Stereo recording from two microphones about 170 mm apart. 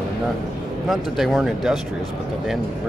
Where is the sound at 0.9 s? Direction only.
Centre (ahead or behind).